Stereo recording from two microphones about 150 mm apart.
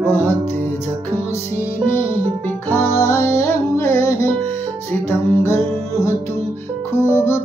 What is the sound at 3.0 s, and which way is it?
Music, 15° left (ahead or behind).